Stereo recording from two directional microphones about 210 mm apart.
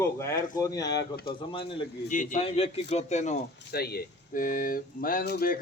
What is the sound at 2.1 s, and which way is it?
A man's voice, 35° left (ahead or behind).